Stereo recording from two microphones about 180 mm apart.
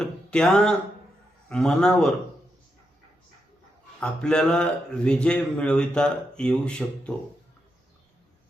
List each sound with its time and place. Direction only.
0.0 s speech: 5° left (ahead or behind)
4.0 s speech: 5° left (ahead or behind)